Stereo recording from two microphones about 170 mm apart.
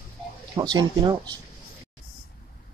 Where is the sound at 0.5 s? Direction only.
25° right (ahead or behind).